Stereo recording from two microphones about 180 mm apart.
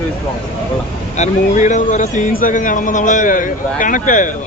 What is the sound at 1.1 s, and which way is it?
Speech, 40° left (ahead or behind).